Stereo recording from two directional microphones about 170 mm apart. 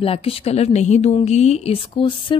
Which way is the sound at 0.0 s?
35° left (ahead or behind).